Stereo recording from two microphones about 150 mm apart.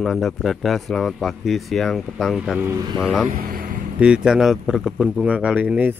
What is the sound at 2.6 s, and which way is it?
Speech, 15° right (ahead or behind).